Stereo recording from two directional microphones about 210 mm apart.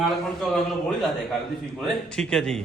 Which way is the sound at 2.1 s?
5° left (ahead or behind).